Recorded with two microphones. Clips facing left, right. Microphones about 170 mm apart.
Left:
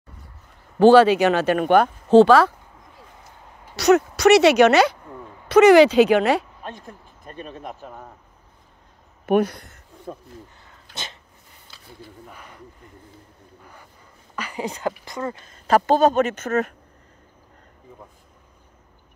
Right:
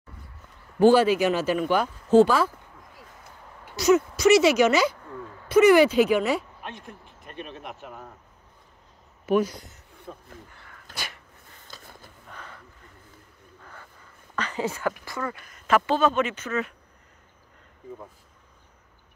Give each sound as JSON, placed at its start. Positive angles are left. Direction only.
{"t": 0.7, "sound": "speech", "side_deg": 75}
{"t": 3.7, "sound": "speech", "side_deg": 70}
{"t": 5.5, "sound": "speech", "side_deg": 90}
{"t": 6.6, "sound": "speech", "side_deg": 40}
{"t": 9.2, "sound": "a sound", "side_deg": 60}
{"t": 10.5, "sound": "dog", "side_deg": 20}
{"t": 11.6, "sound": "a sound", "side_deg": -45}
{"t": 12.3, "sound": "a sound", "side_deg": 15}
{"t": 14.3, "sound": "a woman's voice", "side_deg": 10}